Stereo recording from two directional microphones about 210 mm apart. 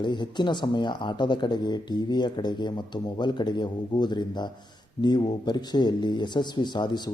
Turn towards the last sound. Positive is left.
turn(degrees=20)  # may be behind; listen again after turning